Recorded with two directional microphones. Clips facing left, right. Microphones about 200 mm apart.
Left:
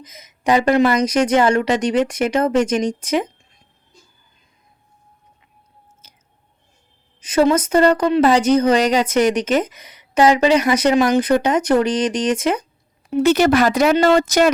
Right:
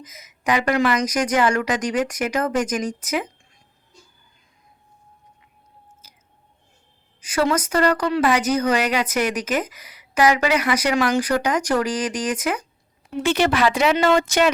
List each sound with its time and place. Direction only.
0.0 s speech: 30° left (ahead or behind)
7.3 s speech: 25° left (ahead or behind)
13.2 s speech: 40° left (ahead or behind)